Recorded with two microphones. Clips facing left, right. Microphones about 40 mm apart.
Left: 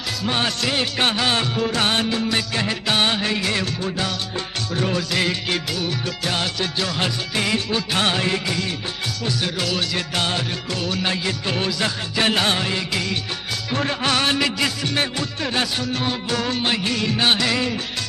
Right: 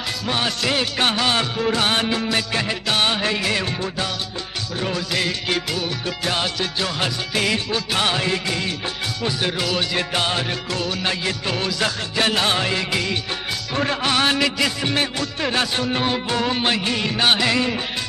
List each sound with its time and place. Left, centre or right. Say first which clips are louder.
0.2 s music: left 1 dB; centre
4.7 s music: left 2 dB; centre
9.6 s music: right 1 dB; centre
10.8 s music: left 2 dB; centre
12.5 s music: right 2 dB; centre
15.7 s music: right 3 dB; right